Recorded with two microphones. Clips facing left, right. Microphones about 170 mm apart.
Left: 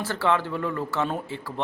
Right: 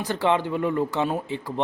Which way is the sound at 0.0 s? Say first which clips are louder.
Right 2 dB; 20° right (ahead or behind).